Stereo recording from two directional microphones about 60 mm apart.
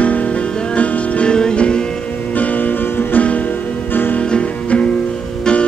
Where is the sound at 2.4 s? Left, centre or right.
Left.